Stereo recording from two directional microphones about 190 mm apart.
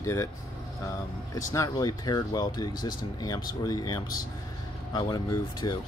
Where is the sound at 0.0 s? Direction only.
15° left (ahead or behind).